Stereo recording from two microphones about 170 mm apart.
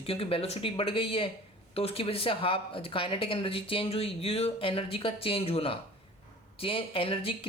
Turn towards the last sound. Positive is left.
turn(degrees=35)  # may be behind; listen again after turning